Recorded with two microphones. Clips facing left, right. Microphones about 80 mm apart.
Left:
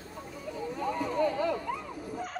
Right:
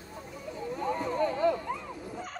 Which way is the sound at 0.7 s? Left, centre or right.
Right.